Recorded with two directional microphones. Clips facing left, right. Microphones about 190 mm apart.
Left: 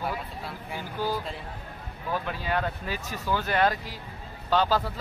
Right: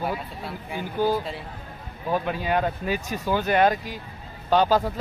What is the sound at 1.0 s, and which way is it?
Speech, 15° right (ahead or behind).